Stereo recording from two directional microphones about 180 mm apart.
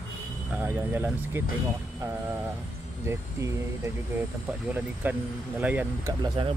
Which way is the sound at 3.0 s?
15° right (ahead or behind).